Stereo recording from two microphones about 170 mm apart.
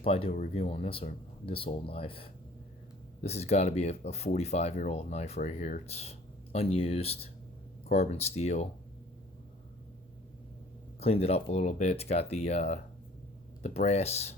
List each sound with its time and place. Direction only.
0.0 s speech: 35° left (ahead or behind)
11.0 s speech: 35° left (ahead or behind)